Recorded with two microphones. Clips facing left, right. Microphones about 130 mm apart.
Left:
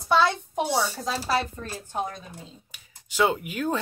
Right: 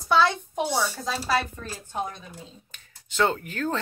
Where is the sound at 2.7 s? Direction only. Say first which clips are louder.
Even; 10° left (ahead or behind).